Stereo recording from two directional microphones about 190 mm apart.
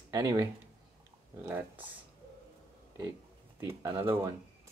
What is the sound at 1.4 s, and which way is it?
Speech, 10° right (ahead or behind).